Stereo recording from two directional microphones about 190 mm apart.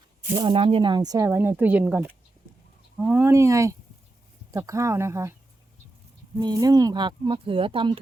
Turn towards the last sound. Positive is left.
turn(degrees=-25)  # may be behind; listen again after turning